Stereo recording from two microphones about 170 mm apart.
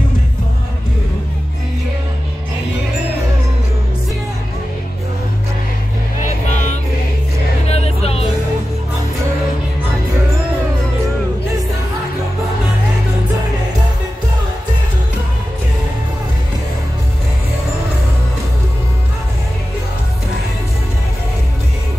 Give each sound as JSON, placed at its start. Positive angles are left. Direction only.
{"t": 6.2, "sound": "vehicle", "side_deg": 45}
{"t": 7.6, "sound": "music", "side_deg": 40}